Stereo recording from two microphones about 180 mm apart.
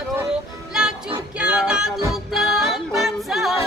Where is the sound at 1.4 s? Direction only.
5° right (ahead or behind).